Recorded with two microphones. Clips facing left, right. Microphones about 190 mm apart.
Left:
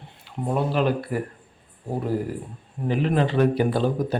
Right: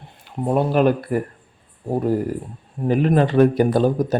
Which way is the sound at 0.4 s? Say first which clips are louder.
Right 6 dB; 50° right (ahead or behind).